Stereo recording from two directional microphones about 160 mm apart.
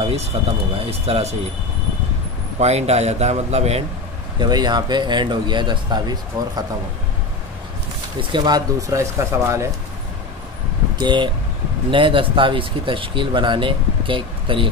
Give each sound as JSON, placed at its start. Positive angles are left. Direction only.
{"t": 0.0, "sound": "speech", "side_deg": -40}
{"t": 2.6, "sound": "speech", "side_deg": -40}
{"t": 4.4, "sound": "speech", "side_deg": -25}
{"t": 8.2, "sound": "speech", "side_deg": -25}
{"t": 11.0, "sound": "speech", "side_deg": -30}